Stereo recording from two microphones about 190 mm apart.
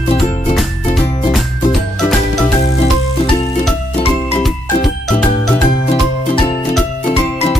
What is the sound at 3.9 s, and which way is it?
Music, 30° left (ahead or behind).